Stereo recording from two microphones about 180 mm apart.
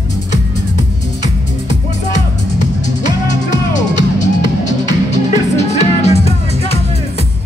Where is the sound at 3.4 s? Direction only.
45° left (ahead or behind).